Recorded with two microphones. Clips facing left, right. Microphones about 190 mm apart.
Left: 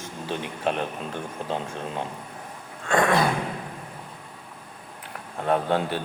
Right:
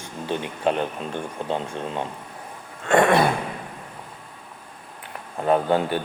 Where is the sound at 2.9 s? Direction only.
25° right (ahead or behind).